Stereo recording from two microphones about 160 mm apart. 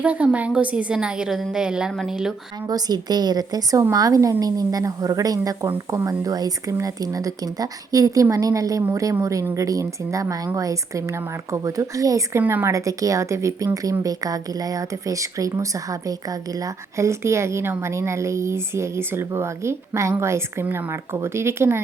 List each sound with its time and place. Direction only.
0.0 s a woman's voice: 10° right (ahead or behind)
2.6 s a woman's voice: 25° right (ahead or behind)